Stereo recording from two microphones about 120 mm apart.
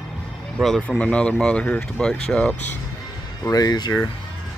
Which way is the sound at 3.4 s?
30° left (ahead or behind).